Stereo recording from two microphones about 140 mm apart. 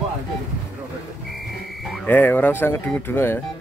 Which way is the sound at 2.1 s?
15° left (ahead or behind).